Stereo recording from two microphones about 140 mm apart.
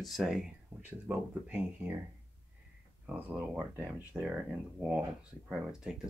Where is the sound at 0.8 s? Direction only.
15° right (ahead or behind).